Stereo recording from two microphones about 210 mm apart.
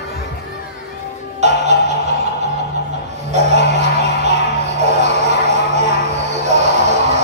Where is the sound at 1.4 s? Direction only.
35° right (ahead or behind).